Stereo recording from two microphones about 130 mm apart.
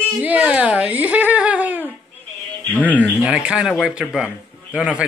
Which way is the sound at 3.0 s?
10° right (ahead or behind).